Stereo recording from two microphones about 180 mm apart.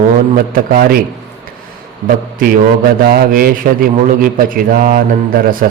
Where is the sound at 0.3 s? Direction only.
50° right (ahead or behind).